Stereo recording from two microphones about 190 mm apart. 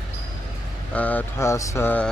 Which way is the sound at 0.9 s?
10° left (ahead or behind).